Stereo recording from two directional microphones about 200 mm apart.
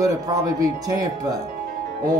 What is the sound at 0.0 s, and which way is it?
Speech, 15° right (ahead or behind).